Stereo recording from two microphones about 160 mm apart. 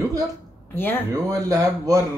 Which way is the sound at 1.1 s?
20° right (ahead or behind).